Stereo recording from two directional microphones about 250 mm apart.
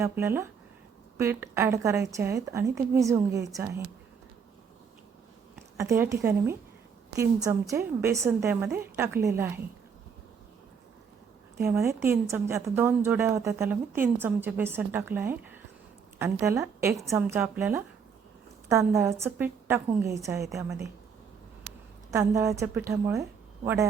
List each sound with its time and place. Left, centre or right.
0.0 s a woman's voice: centre
5.7 s a woman's voice: centre
11.6 s a woman's voice: centre
22.1 s a woman's voice: centre